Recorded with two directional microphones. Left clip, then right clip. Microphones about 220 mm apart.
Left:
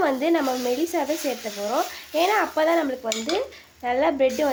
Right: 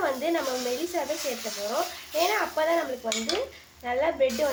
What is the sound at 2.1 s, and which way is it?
Speech, 45° left (ahead or behind).